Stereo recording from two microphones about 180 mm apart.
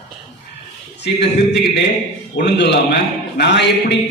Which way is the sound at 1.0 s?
70° left (ahead or behind).